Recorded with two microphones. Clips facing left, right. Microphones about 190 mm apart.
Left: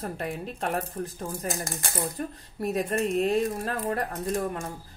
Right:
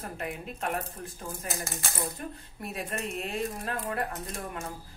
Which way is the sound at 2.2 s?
45° left (ahead or behind).